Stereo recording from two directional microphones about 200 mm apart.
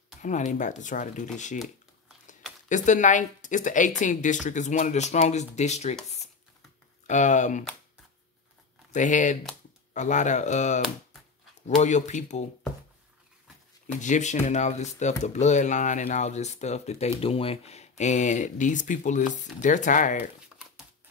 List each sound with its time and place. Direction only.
0.2 s speech: 40° left (ahead or behind)
2.7 s speech: 40° left (ahead or behind)
7.1 s speech: 35° left (ahead or behind)
8.9 s speech: 40° left (ahead or behind)
14.0 s speech: 35° left (ahead or behind)